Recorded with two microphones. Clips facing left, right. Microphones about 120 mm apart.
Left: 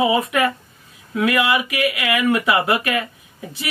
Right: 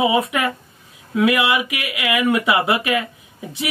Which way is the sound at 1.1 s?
10° right (ahead or behind).